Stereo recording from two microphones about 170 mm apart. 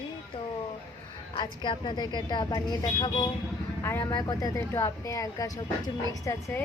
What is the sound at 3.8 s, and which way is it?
Speech, 15° left (ahead or behind).